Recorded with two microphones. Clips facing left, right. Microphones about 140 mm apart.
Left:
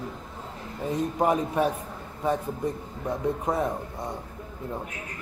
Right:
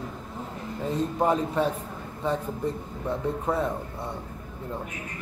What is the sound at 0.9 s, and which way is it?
Speech, 15° left (ahead or behind).